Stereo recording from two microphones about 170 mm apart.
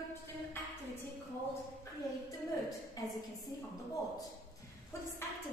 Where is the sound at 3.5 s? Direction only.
20° left (ahead or behind).